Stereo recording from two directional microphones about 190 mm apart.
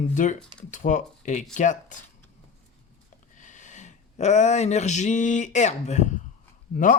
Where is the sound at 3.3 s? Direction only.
40° left (ahead or behind).